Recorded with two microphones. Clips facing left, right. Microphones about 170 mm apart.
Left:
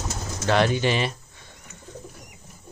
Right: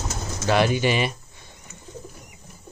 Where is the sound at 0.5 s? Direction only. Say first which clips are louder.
Right 1 dB; 10° right (ahead or behind).